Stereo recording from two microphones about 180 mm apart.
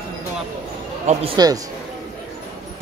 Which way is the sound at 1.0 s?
35° right (ahead or behind).